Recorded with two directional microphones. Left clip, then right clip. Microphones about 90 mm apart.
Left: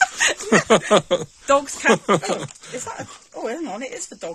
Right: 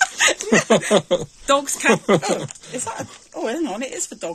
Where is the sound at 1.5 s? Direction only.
20° left (ahead or behind).